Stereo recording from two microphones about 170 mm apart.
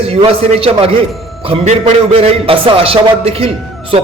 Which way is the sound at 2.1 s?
35° right (ahead or behind).